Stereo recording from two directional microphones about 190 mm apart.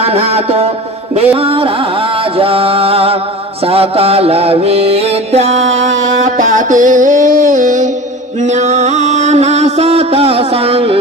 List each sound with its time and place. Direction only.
0.0 s mantra: 35° right (ahead or behind)
1.1 s music: 30° right (ahead or behind)
3.6 s mantra: 30° right (ahead or behind)
5.8 s a sound: 40° right (ahead or behind)
8.4 s music: 40° right (ahead or behind)